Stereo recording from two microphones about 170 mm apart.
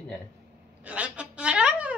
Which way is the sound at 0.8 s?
5° right (ahead or behind).